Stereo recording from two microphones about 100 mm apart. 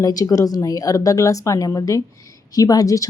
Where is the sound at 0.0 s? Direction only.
40° left (ahead or behind).